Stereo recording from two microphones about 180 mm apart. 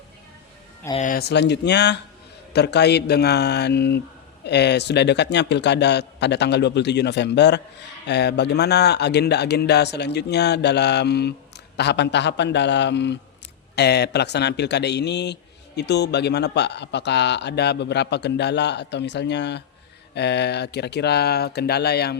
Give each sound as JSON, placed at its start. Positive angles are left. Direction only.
{"t": 0.9, "sound": "speech", "side_deg": 45}
{"t": 1.2, "sound": "a man's voice", "side_deg": 70}